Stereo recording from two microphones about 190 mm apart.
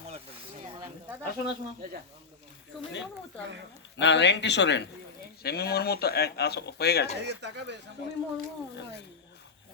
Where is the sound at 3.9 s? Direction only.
70° left (ahead or behind).